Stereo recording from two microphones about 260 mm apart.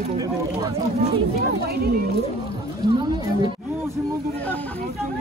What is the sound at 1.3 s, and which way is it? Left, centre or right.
Speech, right.